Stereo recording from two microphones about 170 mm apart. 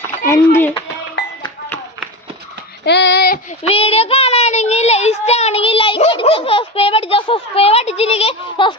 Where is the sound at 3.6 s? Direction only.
35° left (ahead or behind).